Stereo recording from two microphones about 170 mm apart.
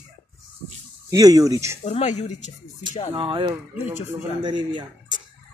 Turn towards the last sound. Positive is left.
turn(degrees=-25)  # may be behind; listen again after turning